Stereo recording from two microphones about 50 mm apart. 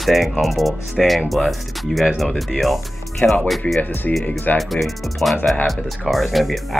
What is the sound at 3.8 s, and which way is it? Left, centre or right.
Speech, left.